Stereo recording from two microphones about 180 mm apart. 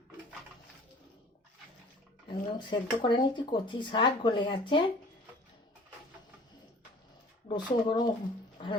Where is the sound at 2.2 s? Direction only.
25° left (ahead or behind).